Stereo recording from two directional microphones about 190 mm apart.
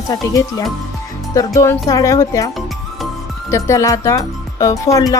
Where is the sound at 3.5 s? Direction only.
15° left (ahead or behind).